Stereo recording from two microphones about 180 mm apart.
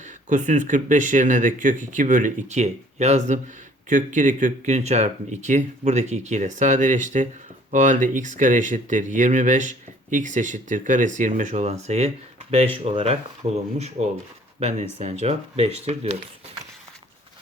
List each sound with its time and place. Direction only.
0.0 s speech: 45° right (ahead or behind)